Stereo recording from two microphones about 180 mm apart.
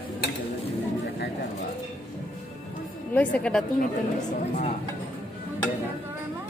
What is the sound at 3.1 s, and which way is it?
Speech, 5° left (ahead or behind).